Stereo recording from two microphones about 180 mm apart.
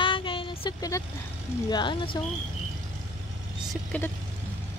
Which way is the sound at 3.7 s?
10° left (ahead or behind).